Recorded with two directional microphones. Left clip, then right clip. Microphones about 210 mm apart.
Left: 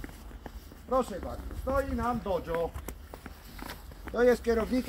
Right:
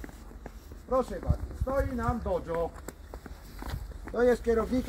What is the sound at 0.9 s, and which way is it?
Speech, 15° right (ahead or behind).